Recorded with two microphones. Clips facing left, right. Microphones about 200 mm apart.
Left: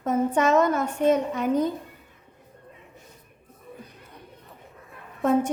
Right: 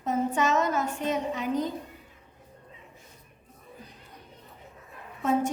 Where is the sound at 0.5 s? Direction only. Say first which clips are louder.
Left 5 dB; 55° left (ahead or behind).